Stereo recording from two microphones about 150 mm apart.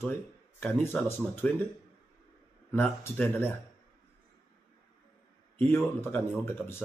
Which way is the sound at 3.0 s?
10° left (ahead or behind).